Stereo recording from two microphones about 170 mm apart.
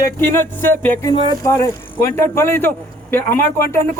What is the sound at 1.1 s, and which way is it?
Speech, 25° left (ahead or behind).